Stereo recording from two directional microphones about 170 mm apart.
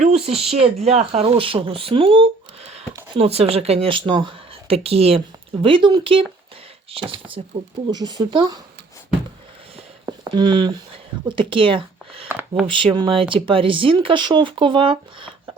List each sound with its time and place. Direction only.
0.0 s speech: 35° right (ahead or behind)
10.1 s speech: 25° right (ahead or behind)
12.3 s speech: 10° right (ahead or behind)
12.6 s speech: 30° right (ahead or behind)